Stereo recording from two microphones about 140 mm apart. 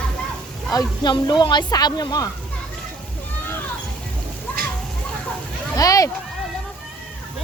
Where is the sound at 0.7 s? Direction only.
30° left (ahead or behind).